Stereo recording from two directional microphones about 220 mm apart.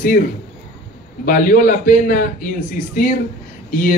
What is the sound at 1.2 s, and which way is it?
Speech, 40° left (ahead or behind).